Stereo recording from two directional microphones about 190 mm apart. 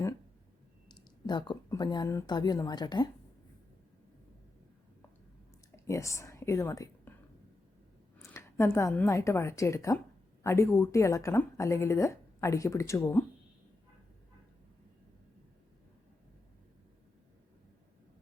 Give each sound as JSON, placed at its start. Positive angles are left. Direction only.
{"t": 0.9, "sound": "speech", "side_deg": 25}
{"t": 5.7, "sound": "speech", "side_deg": 15}
{"t": 8.2, "sound": "a woman's voice", "side_deg": 15}